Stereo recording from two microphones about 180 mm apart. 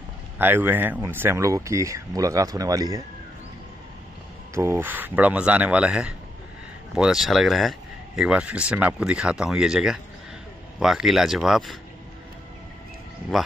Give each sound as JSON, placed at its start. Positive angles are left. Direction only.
{"t": 0.4, "sound": "speech", "side_deg": -10}
{"t": 4.6, "sound": "speech", "side_deg": -15}
{"t": 13.3, "sound": "speech", "side_deg": 0}